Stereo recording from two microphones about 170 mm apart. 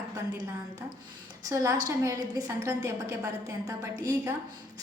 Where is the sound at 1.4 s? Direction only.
20° right (ahead or behind).